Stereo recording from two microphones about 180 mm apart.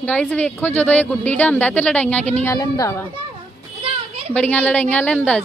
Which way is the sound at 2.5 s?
20° left (ahead or behind).